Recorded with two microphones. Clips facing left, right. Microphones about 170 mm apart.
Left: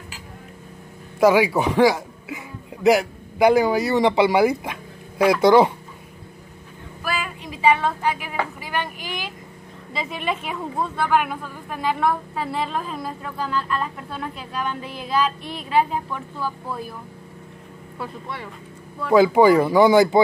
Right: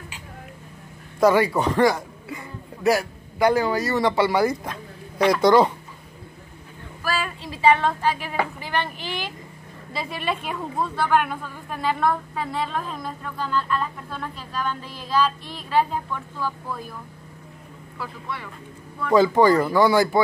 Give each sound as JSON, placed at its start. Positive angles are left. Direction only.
{"t": 1.2, "sound": "speech", "side_deg": 5}
{"t": 2.8, "sound": "speech", "side_deg": 15}
{"t": 7.2, "sound": "a sound", "side_deg": 15}
{"t": 8.5, "sound": "speech", "side_deg": 10}
{"t": 9.9, "sound": "a woman's voice", "side_deg": 0}
{"t": 17.9, "sound": "speech", "side_deg": 25}
{"t": 19.0, "sound": "speech", "side_deg": 10}